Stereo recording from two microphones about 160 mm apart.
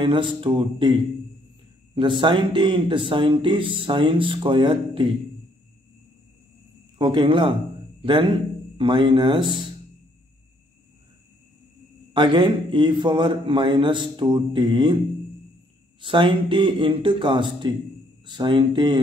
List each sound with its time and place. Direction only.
0.0 s speech: 30° right (ahead or behind)
2.0 s speech: 30° right (ahead or behind)
7.0 s speech: 30° right (ahead or behind)
12.1 s speech: 30° right (ahead or behind)
16.0 s speech: 30° right (ahead or behind)